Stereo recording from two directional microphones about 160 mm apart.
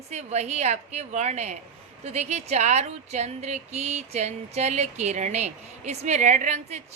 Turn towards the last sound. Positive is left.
turn(degrees=-45)  # may be behind; listen again after turning